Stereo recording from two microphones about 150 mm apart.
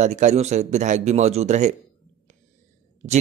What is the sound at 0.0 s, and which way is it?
Speech, 50° right (ahead or behind).